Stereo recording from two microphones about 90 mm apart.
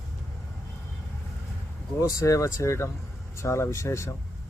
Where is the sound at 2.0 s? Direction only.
40° left (ahead or behind).